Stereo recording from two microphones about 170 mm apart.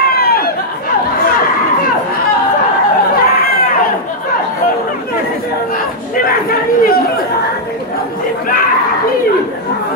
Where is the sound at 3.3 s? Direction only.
60° left (ahead or behind).